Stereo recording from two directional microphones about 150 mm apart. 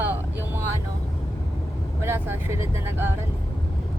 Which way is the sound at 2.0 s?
15° right (ahead or behind).